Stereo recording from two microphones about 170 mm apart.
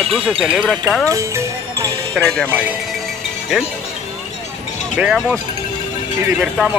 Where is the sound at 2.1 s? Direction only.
5° left (ahead or behind).